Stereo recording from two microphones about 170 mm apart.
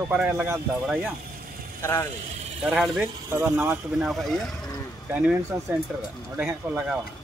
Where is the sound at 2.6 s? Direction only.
5° right (ahead or behind).